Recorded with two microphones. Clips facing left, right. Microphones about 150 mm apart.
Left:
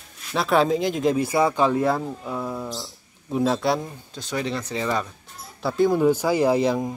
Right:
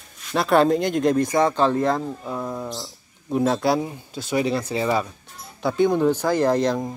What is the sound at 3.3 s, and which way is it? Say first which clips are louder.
Speech: right 2 dB; centre (ahead or behind).